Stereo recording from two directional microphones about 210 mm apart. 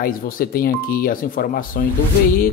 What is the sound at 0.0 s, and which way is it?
Speech, 45° left (ahead or behind).